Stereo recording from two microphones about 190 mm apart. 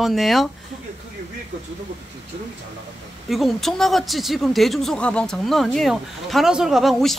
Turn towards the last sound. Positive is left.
turn(degrees=0)  # may be behind; listen again after turning